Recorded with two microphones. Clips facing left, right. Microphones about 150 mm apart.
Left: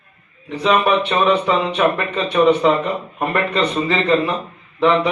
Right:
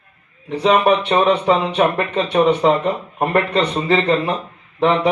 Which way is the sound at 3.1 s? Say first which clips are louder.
Right 2 dB; 35° right (ahead or behind).